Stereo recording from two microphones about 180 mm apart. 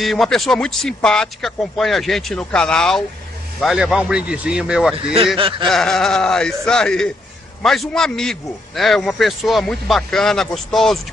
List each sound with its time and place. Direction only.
0.0 s a man's voice: centre (ahead or behind)
4.9 s speech: 30° right (ahead or behind)
5.7 s a man's voice: 5° left (ahead or behind)